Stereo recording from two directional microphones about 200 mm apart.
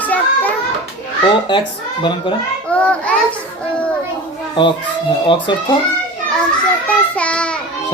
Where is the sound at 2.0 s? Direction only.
25° left (ahead or behind).